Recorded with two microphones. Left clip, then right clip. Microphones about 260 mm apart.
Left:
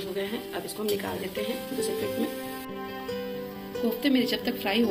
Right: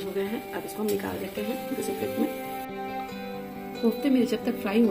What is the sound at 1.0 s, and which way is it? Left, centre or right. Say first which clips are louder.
Speech: left 1 dB; right.